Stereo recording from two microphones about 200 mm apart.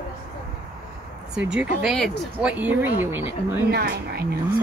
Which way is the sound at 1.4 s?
5° right (ahead or behind).